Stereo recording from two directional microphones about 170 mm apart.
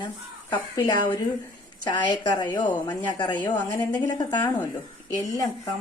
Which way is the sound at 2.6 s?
10° left (ahead or behind).